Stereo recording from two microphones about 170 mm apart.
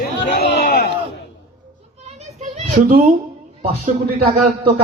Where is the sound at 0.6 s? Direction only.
55° left (ahead or behind).